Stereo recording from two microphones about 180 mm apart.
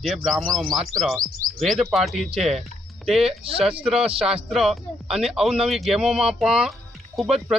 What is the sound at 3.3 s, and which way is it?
Speech, 30° right (ahead or behind).